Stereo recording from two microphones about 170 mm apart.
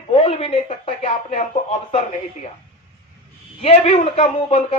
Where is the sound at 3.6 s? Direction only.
40° left (ahead or behind).